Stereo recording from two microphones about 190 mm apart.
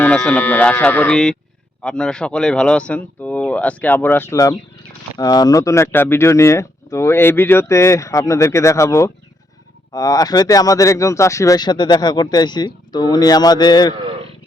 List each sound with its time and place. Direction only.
0.0 s speech: 5° left (ahead or behind); by 13.9 s 20° left (ahead or behind)
13.9 s wild animals: 25° right (ahead or behind)